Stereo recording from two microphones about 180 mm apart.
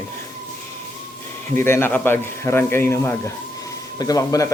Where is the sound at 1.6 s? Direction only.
10° left (ahead or behind).